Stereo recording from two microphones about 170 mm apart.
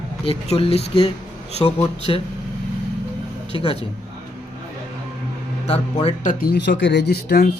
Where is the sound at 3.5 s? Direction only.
30° left (ahead or behind).